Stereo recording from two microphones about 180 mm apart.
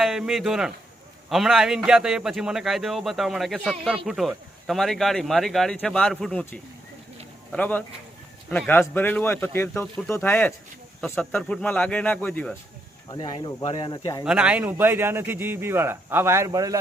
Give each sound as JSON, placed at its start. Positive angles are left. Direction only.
{"t": 0.0, "sound": "a man's voice", "side_deg": 0}
{"t": 13.1, "sound": "speech", "side_deg": 25}
{"t": 14.3, "sound": "a man's voice", "side_deg": -5}